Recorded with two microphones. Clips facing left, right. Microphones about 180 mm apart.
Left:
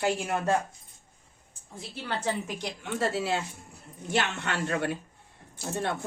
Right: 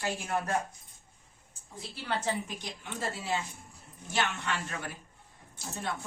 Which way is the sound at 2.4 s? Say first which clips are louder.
Left 6 dB; 75° left (ahead or behind).